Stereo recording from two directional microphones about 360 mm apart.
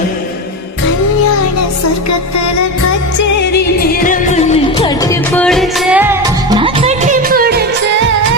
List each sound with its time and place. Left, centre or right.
4.0 s music: left
5.3 s music: centre; by 7.6 s right